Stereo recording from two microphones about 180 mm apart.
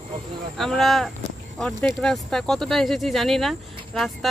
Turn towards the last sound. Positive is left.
turn(degrees=0)  # may be behind; listen again after turning